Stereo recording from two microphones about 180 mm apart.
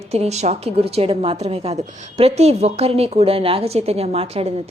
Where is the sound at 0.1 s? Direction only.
35° right (ahead or behind).